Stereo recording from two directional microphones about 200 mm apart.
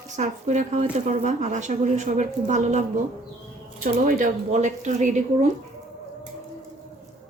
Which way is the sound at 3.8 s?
40° right (ahead or behind).